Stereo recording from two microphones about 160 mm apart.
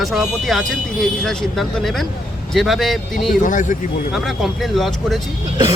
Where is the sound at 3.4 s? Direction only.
55° left (ahead or behind).